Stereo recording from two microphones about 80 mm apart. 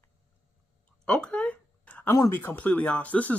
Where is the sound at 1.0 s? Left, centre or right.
Centre.